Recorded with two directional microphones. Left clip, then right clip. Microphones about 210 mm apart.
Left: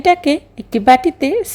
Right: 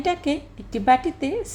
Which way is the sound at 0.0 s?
40° left (ahead or behind).